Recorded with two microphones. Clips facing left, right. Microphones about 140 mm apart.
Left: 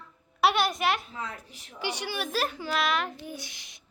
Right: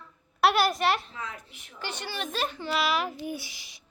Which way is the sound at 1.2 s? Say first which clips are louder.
Left 1 dB; 35° left (ahead or behind).